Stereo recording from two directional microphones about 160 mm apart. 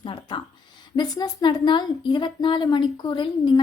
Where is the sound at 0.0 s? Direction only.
30° left (ahead or behind).